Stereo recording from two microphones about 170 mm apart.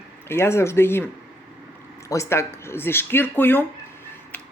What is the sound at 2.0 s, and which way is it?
Speech, 15° left (ahead or behind).